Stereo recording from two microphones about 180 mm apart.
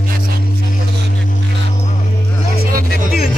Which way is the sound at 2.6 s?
55° right (ahead or behind).